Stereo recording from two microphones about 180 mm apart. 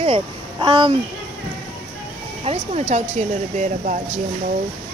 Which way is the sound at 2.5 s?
35° right (ahead or behind).